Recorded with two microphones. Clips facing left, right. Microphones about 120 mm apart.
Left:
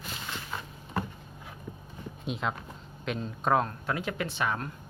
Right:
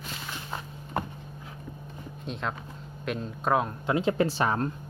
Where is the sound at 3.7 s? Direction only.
20° right (ahead or behind).